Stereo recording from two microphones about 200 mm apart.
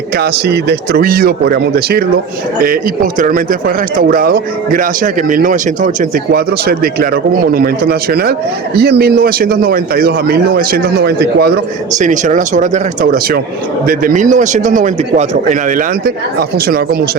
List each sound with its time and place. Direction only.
0.2 s speech: 55° right (ahead or behind)
11.9 s speech: 40° right (ahead or behind)
16.0 s speech: 50° right (ahead or behind)